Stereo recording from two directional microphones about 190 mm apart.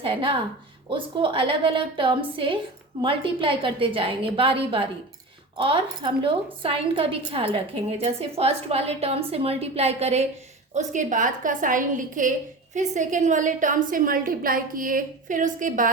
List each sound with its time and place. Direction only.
0.0 s a woman's voice: 30° right (ahead or behind); by 15.9 s 45° right (ahead or behind)